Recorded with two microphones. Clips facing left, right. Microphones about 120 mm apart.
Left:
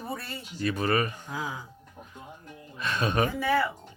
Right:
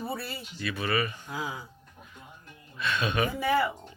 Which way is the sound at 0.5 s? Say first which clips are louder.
Left 4 dB; 40° left (ahead or behind).